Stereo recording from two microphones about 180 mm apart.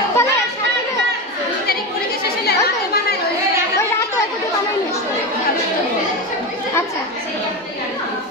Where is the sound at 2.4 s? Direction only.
60° left (ahead or behind).